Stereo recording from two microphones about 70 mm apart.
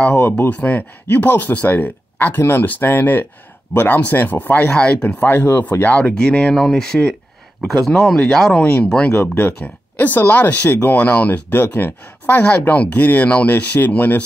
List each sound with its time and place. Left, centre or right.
0.1 s speech: left; by 9.1 s centre
9.1 s speech: left